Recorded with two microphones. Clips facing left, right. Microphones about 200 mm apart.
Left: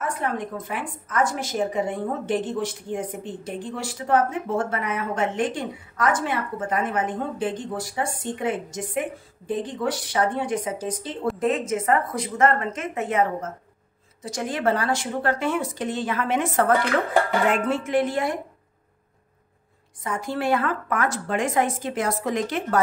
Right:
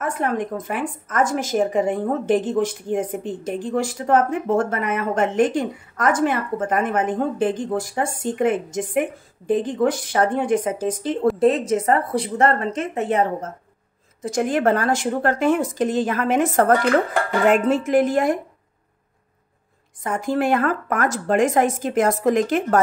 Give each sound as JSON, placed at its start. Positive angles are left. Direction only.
{"t": 0.0, "sound": "speech", "side_deg": -45}
{"t": 11.3, "sound": "a woman's voice", "side_deg": -35}
{"t": 14.2, "sound": "speech", "side_deg": -50}
{"t": 20.0, "sound": "speech", "side_deg": -50}